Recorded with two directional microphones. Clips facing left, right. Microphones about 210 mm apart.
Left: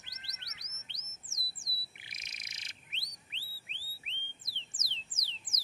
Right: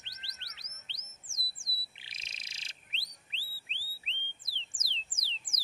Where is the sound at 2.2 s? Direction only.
30° right (ahead or behind).